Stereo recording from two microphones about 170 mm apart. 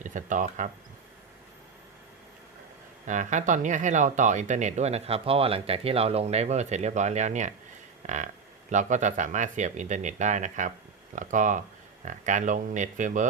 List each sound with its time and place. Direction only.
0.0 s speech: 50° right (ahead or behind)
3.1 s speech: 45° right (ahead or behind)